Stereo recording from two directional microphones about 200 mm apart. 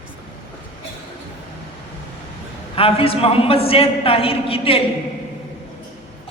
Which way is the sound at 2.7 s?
30° left (ahead or behind).